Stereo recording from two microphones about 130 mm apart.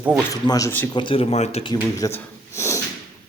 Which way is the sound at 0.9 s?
40° left (ahead or behind).